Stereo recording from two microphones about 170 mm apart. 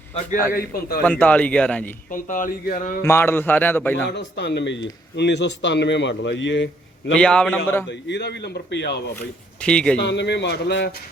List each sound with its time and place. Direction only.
0.5 s a man's voice: 60° left (ahead or behind)
1.0 s a man's voice: 10° left (ahead or behind)
2.0 s speech: 50° left (ahead or behind)
3.0 s a man's voice: 15° left (ahead or behind)
4.1 s speech: 85° left
7.2 s a man's voice: 5° left (ahead or behind)
7.9 s a man's voice: 90° left
9.6 s a man's voice: 5° left (ahead or behind)
10.0 s speech: 90° left